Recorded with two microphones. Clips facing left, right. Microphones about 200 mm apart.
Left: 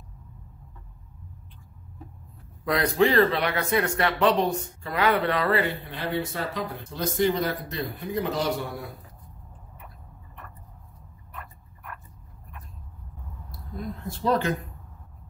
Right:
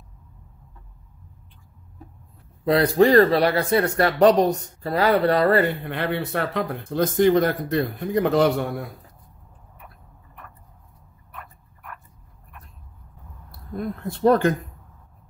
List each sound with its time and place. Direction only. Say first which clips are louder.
2.6 s speech: right 5 dB; 30° right (ahead or behind)
5.9 s speech: right 4 dB; 60° right (ahead or behind)
13.5 s speech: right 6 dB; 55° right (ahead or behind)